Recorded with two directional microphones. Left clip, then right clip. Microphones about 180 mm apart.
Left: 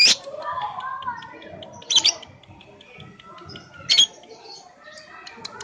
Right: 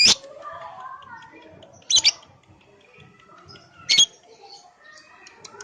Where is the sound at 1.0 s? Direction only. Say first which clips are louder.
Left 10 dB; centre (ahead or behind).